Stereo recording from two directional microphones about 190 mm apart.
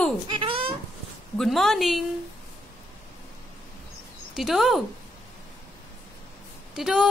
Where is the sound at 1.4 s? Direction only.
Centre (ahead or behind).